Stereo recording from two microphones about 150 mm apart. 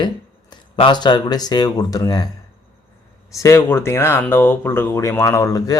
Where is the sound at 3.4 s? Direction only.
20° left (ahead or behind).